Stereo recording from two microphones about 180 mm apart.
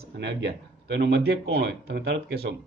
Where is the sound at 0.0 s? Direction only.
70° right (ahead or behind).